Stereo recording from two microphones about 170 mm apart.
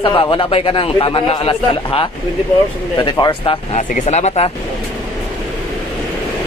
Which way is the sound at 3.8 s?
45° left (ahead or behind).